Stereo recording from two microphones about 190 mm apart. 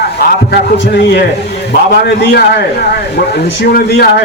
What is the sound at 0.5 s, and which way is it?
Speech, 60° left (ahead or behind).